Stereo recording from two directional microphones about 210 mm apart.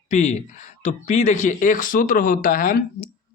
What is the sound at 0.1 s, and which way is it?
Speech, 35° left (ahead or behind).